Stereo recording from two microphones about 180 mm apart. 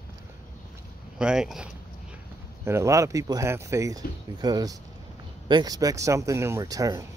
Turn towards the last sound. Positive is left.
turn(degrees=-20)  # may be behind; listen again after turning